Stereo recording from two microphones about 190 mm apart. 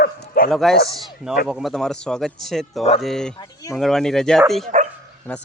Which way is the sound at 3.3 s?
20° left (ahead or behind).